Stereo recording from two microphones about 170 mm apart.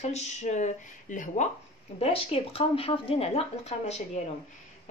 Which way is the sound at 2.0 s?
35° left (ahead or behind).